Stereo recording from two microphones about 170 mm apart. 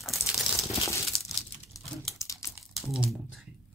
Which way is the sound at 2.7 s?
Centre (ahead or behind).